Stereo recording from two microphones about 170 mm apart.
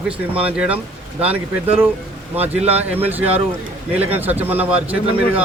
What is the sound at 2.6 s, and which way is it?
Speech, 40° right (ahead or behind).